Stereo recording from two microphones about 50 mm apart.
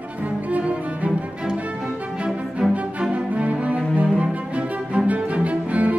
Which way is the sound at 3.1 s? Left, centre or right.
Right.